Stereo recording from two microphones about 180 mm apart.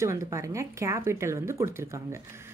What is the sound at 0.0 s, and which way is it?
A woman's voice, 15° right (ahead or behind).